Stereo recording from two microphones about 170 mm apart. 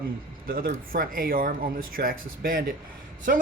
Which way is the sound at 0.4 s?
60° right (ahead or behind).